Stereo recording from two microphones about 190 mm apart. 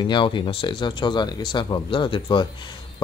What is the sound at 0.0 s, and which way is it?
Speech, 25° left (ahead or behind).